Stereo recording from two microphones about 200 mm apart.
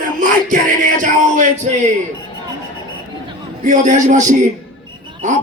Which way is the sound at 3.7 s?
40° right (ahead or behind).